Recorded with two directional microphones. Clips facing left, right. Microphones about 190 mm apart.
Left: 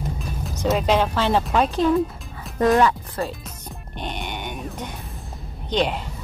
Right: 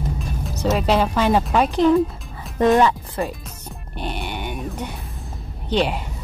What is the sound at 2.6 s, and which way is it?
Speech, 20° right (ahead or behind).